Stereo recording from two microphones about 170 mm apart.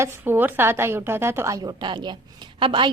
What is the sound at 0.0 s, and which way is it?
A woman's voice, 15° right (ahead or behind).